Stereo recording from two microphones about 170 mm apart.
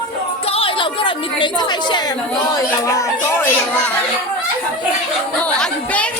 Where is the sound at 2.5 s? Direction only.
20° left (ahead or behind).